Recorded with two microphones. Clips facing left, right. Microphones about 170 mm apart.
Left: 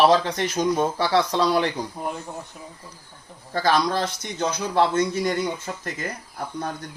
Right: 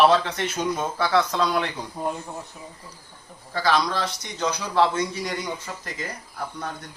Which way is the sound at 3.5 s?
50° left (ahead or behind).